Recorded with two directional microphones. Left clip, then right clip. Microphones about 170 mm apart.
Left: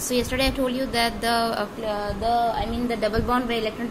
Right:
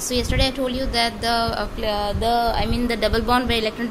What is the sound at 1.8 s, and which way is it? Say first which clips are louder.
Speech: right 7 dB; 35° right (ahead or behind).